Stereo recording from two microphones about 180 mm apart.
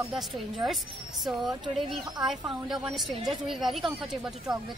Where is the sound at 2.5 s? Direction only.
5° right (ahead or behind).